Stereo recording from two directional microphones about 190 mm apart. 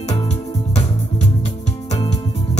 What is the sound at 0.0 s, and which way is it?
Music, 35° left (ahead or behind).